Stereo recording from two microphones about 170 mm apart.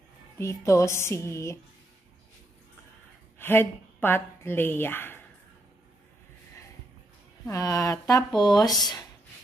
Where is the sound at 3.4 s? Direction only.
10° left (ahead or behind).